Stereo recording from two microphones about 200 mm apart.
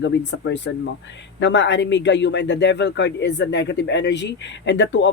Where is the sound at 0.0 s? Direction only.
60° left (ahead or behind).